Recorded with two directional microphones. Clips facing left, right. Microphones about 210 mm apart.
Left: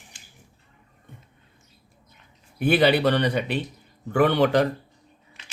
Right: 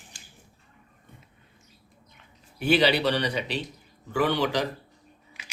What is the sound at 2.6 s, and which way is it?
A man's voice, 55° left (ahead or behind).